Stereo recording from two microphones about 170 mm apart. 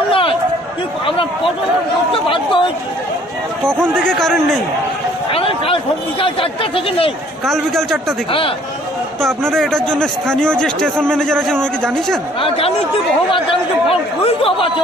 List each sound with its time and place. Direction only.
0.1 s run: 30° left (ahead or behind)
1.0 s a sound: 30° left (ahead or behind)
2.2 s chatter: 30° left (ahead or behind)
3.9 s a man's voice: 5° left (ahead or behind)
5.3 s speech: 35° left (ahead or behind)
7.4 s a man's voice: centre (ahead or behind)
8.3 s speech: 30° left (ahead or behind)
9.2 s a man's voice: 5° left (ahead or behind)
12.4 s speech: 35° left (ahead or behind)